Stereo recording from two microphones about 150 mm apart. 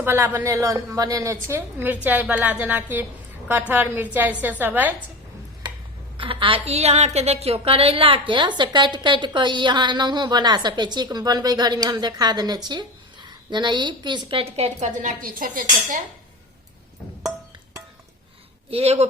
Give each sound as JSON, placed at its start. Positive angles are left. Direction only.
{"t": 0.0, "sound": "a woman's voice", "side_deg": -15}
{"t": 6.1, "sound": "a woman's voice", "side_deg": -35}
{"t": 18.7, "sound": "speech", "side_deg": -45}